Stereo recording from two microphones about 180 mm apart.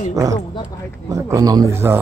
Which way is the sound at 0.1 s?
20° right (ahead or behind).